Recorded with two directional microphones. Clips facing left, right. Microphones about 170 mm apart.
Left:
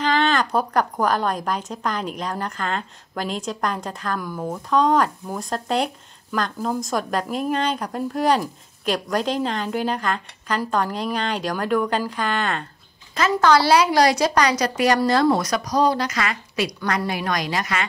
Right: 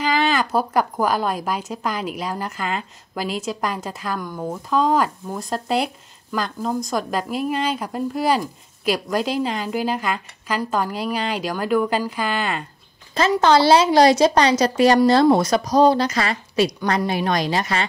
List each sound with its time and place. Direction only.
0.0 s a woman's voice: 10° right (ahead or behind)
13.1 s a woman's voice: 25° right (ahead or behind)